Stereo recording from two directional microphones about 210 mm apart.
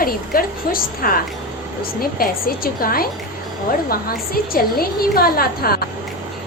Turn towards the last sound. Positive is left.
turn(degrees=45)  # may be behind; listen again after turning